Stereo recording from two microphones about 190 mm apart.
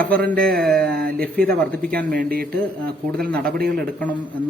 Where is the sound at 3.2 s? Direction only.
50° right (ahead or behind).